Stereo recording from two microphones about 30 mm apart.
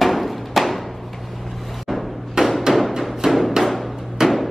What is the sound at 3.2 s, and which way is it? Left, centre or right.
Music, right.